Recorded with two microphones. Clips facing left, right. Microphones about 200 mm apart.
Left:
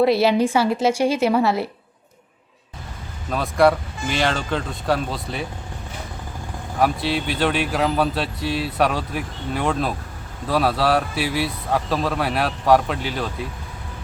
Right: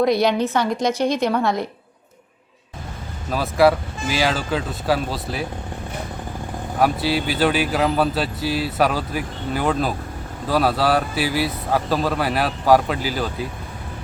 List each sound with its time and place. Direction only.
0.0 s a woman's voice: 5° left (ahead or behind)
3.2 s speech: centre (ahead or behind)
6.7 s speech: centre (ahead or behind)